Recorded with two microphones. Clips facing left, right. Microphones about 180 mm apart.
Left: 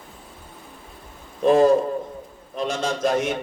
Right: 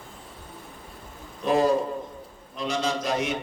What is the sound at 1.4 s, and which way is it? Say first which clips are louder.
A man's voice: left 6 dB; 50° left (ahead or behind).